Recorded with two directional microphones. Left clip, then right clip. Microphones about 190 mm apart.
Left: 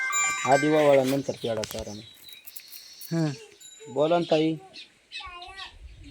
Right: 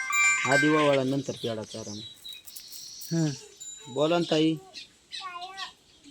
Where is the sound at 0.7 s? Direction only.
10° right (ahead or behind).